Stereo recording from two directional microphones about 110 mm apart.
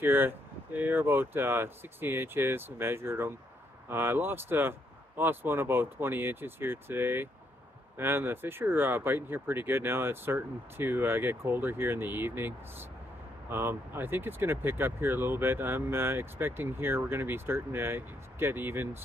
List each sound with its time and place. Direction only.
0.0 s speech: 20° right (ahead or behind)